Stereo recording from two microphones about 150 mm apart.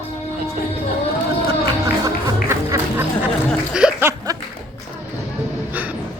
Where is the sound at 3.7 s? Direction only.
10° right (ahead or behind).